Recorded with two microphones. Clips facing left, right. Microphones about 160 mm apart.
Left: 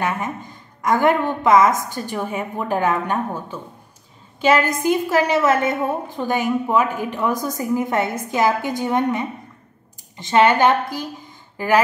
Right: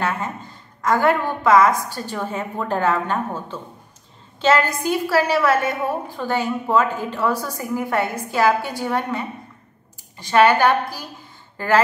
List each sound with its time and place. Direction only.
0.0 s a woman's voice: 15° left (ahead or behind)